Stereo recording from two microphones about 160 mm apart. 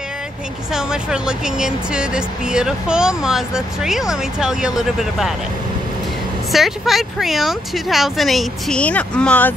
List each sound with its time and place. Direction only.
0.7 s speech: 5° right (ahead or behind)
6.5 s speech: centre (ahead or behind)